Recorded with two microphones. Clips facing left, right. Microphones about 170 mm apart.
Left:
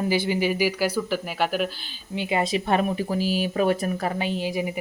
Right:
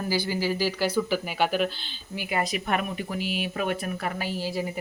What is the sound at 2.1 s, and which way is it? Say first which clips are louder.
Speech: left 4 dB; 25° left (ahead or behind).